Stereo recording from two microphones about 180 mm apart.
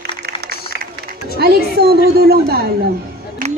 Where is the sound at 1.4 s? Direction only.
60° right (ahead or behind).